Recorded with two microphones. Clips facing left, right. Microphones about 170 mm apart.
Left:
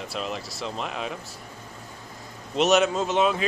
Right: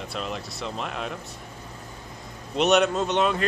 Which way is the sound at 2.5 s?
Centre (ahead or behind).